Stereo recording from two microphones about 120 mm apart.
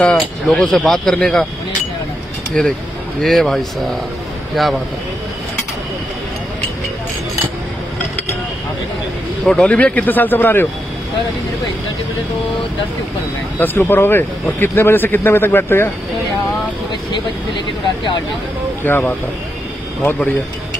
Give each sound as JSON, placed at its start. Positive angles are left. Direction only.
{"t": 0.0, "sound": "speech", "side_deg": 10}
{"t": 2.6, "sound": "speech", "side_deg": 5}
{"t": 9.5, "sound": "speech", "side_deg": 10}
{"t": 13.6, "sound": "speech", "side_deg": 20}
{"t": 18.9, "sound": "speech", "side_deg": 20}